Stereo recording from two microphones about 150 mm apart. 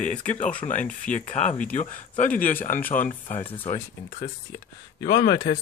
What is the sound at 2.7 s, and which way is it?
Speech, 70° left (ahead or behind).